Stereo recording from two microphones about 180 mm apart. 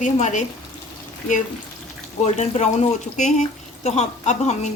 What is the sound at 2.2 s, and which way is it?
Speech, 40° left (ahead or behind).